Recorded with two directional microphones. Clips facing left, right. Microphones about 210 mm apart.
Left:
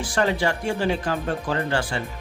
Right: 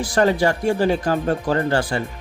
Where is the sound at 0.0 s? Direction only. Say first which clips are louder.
Right 5 dB; 40° right (ahead or behind).